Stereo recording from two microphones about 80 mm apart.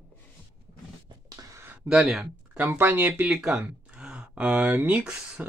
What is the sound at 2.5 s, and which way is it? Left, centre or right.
Speech, right.